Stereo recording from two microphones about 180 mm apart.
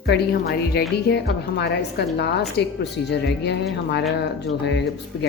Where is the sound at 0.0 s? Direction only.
65° left (ahead or behind).